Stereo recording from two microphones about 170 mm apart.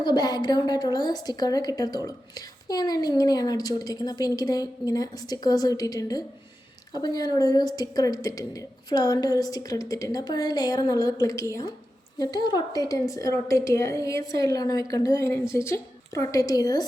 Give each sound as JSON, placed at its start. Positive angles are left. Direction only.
{"t": 0.0, "sound": "a woman's voice", "side_deg": 25}